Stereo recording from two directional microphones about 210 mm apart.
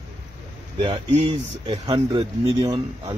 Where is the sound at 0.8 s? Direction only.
25° right (ahead or behind).